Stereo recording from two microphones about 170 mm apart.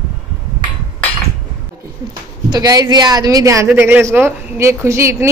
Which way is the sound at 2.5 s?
20° right (ahead or behind).